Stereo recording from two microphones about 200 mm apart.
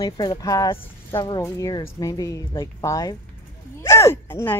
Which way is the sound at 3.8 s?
15° left (ahead or behind).